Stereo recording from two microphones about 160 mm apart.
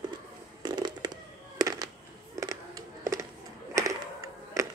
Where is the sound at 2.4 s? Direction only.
20° right (ahead or behind).